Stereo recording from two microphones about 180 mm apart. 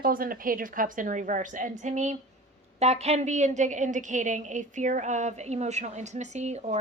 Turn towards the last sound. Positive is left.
turn(degrees=-40)  # may be behind; listen again after turning